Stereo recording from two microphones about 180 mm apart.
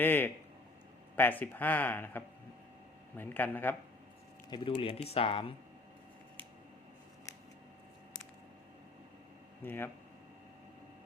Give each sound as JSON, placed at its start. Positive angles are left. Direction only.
{"t": 0.0, "sound": "speech", "side_deg": 10}
{"t": 4.4, "sound": "speech", "side_deg": 25}
{"t": 9.6, "sound": "speech", "side_deg": 10}